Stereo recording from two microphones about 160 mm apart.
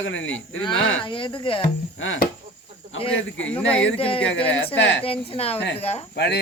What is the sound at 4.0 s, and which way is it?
A woman's voice, 35° left (ahead or behind).